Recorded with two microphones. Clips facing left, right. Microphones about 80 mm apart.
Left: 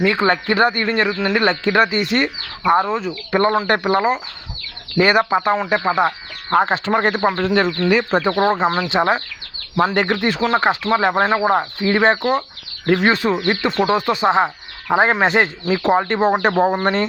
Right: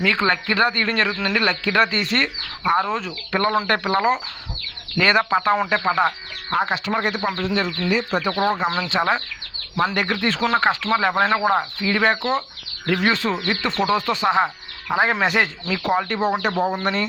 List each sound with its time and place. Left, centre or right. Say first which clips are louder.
0.0 s speech: left 4 dB; left
1.2 s speech: left 4 dB; left
2.8 s speech: left 3 dB; centre
3.3 s speech: left 4 dB; centre
6.5 s speech: left 5 dB; left
8.2 s speech: left 4 dB; left
14.9 s speech: left 4 dB; left